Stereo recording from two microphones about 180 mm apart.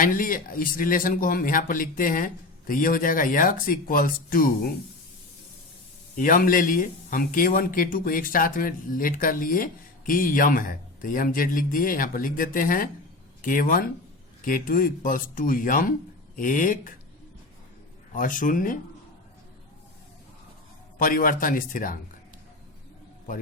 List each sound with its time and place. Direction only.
0.0 s speech: 50° left (ahead or behind)
6.1 s speech: 50° left (ahead or behind)
18.1 s speech: 50° left (ahead or behind)
21.0 s speech: 50° left (ahead or behind)